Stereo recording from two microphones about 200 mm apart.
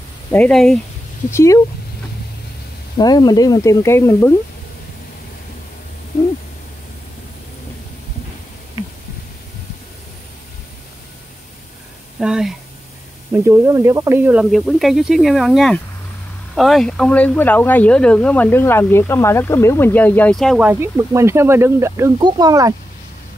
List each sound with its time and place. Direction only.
0.3 s speech: 5° left (ahead or behind)
1.3 s speech: 15° left (ahead or behind)
3.0 s speech: 20° left (ahead or behind)
12.2 s speech: 5° right (ahead or behind)
13.3 s speech: 15° right (ahead or behind)